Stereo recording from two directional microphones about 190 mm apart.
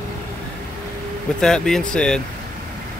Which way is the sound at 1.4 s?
5° left (ahead or behind).